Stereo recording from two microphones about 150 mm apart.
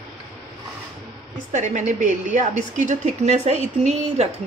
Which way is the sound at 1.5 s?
55° right (ahead or behind).